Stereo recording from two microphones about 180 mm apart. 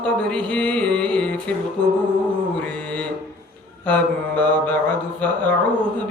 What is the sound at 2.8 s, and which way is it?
Mantra, 10° left (ahead or behind).